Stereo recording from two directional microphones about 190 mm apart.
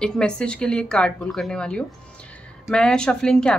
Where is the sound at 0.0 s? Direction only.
5° left (ahead or behind).